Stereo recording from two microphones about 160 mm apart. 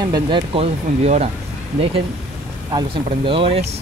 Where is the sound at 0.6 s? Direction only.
45° right (ahead or behind).